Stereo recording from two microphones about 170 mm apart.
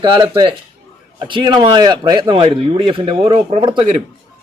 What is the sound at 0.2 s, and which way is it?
Speech, 30° right (ahead or behind).